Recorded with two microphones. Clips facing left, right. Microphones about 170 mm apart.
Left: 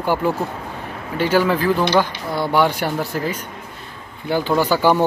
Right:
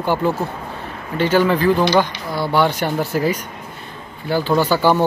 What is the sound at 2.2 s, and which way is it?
Speech, 20° left (ahead or behind).